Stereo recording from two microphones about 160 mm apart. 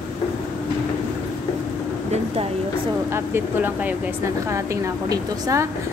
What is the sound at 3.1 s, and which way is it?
Speech, 15° right (ahead or behind).